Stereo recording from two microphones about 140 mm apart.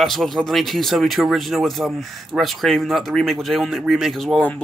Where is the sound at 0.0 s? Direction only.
Centre (ahead or behind).